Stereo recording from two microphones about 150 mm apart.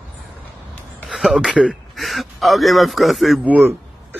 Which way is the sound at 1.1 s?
Centre (ahead or behind).